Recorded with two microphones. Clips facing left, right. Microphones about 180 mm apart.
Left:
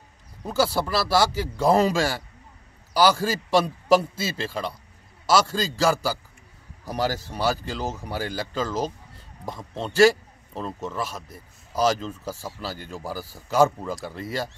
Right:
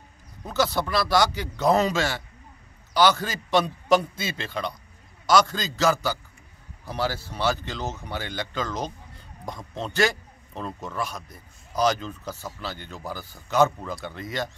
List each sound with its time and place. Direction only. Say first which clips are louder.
0.5 s a man's voice: left 2 dB; 5° left (ahead or behind)
2.0 s speech: left 2 dB; 35° left (ahead or behind)
3.3 s a man's voice: left 2 dB; 5° left (ahead or behind)
6.8 s speech: left 2 dB; 40° left (ahead or behind)
8.6 s a man's voice: left 4 dB; 5° left (ahead or behind)
12.6 s speech: left 2 dB; 35° left (ahead or behind)
12.9 s speech: left 3 dB; 5° left (ahead or behind)
14.1 s speech: left 1 dB; 30° left (ahead or behind)